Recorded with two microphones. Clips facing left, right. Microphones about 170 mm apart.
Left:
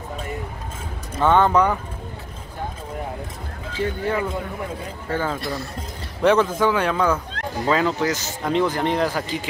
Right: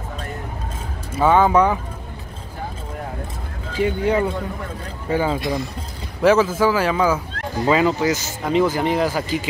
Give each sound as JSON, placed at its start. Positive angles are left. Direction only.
{"t": 1.1, "sound": "speech", "side_deg": -5}
{"t": 3.8, "sound": "speech", "side_deg": -20}